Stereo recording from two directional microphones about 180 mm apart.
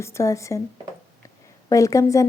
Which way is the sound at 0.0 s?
15° left (ahead or behind).